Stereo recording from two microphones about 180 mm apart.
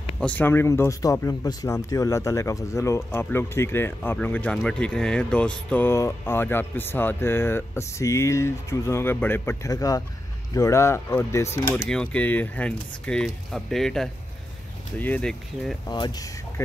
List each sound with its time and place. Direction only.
0.2 s speech: 10° left (ahead or behind)
15.9 s speech: 25° left (ahead or behind)